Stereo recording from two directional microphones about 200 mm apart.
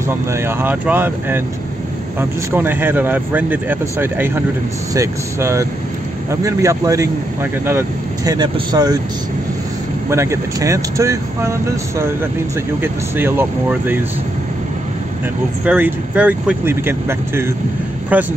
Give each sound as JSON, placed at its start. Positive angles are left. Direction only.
{"t": 0.3, "sound": "speech", "side_deg": -10}
{"t": 8.3, "sound": "speech", "side_deg": -20}
{"t": 10.0, "sound": "speech", "side_deg": -15}
{"t": 12.8, "sound": "speech", "side_deg": -10}
{"t": 15.6, "sound": "speech", "side_deg": -10}